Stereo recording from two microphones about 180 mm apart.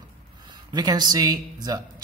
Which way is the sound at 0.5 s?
25° right (ahead or behind).